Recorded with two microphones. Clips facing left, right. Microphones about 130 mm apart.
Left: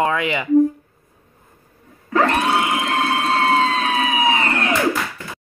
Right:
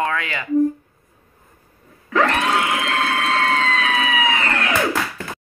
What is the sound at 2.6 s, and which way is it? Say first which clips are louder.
Emergency vehicle: left 1 dB; 20° left (ahead or behind).